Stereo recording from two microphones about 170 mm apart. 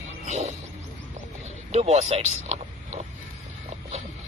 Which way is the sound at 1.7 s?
40° right (ahead or behind).